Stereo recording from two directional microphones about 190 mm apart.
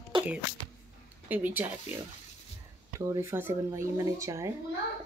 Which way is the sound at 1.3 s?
10° right (ahead or behind).